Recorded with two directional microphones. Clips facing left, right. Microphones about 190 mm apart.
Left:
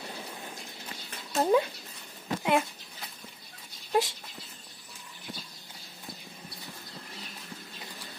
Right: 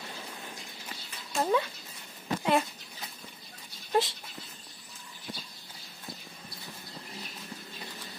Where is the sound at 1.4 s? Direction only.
15° left (ahead or behind).